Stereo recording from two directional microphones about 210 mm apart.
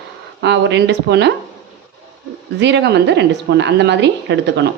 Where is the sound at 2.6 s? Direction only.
55° right (ahead or behind).